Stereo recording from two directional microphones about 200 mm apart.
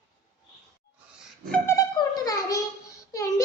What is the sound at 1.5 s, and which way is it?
Speech, 10° left (ahead or behind).